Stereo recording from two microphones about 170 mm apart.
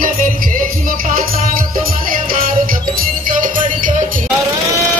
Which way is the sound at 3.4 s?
50° right (ahead or behind).